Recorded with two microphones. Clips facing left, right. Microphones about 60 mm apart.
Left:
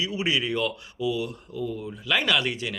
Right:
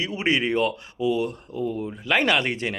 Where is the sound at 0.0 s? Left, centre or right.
Right.